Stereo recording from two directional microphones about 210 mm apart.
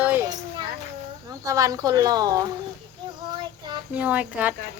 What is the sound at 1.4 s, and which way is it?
Speech, 15° right (ahead or behind).